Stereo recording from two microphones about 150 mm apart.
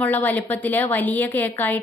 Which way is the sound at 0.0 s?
10° left (ahead or behind).